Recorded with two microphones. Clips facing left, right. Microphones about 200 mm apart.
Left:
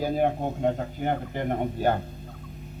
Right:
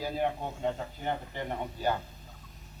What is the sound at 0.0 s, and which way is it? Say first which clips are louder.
A man's voice: left 7 dB; 50° left (ahead or behind).